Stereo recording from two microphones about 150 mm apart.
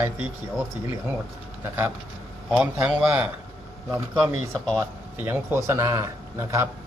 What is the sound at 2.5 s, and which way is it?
Speech, 5° right (ahead or behind).